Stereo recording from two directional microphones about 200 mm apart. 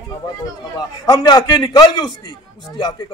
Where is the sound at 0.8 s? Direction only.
20° left (ahead or behind).